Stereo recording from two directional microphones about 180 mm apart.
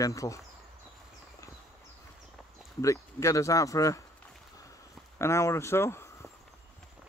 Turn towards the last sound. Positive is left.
turn(degrees=15)  # may be behind; listen again after turning